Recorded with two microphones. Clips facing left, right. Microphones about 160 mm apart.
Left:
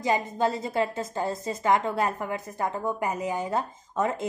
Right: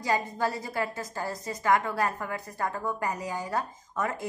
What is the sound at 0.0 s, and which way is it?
A woman's voice, 20° left (ahead or behind).